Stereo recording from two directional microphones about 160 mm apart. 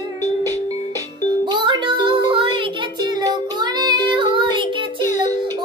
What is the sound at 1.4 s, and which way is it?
Music, 30° right (ahead or behind).